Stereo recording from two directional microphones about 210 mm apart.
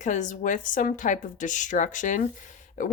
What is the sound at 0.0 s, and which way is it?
Speech, 35° left (ahead or behind).